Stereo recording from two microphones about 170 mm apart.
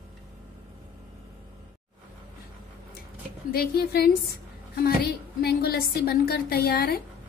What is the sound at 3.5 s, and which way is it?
Speech, 65° left (ahead or behind).